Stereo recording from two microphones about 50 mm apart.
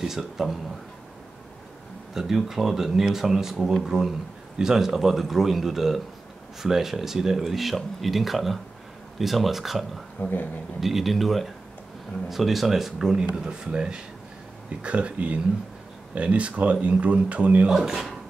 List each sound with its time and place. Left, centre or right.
0.0 s speech: centre
2.1 s speech: centre
10.2 s a man's voice: left
10.8 s speech: centre; by 17.6 s right
17.6 s speech: centre